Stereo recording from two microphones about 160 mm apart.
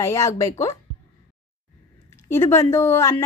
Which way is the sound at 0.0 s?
20° left (ahead or behind).